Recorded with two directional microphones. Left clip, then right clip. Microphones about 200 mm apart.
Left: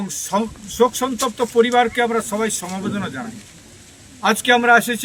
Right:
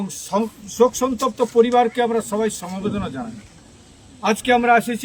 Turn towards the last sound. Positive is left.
turn(degrees=-5)  # may be behind; listen again after turning